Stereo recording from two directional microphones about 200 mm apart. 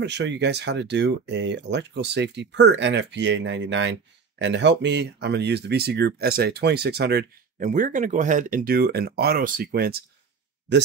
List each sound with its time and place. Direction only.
0.0 s speech: 60° right (ahead or behind)